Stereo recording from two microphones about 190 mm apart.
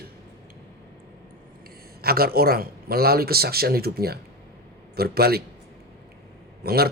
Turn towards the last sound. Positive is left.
turn(degrees=-55)  # may be behind; listen again after turning